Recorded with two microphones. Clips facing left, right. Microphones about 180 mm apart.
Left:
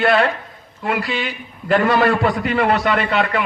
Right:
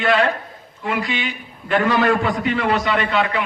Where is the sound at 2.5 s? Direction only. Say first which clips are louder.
Left 2 dB; 65° left (ahead or behind).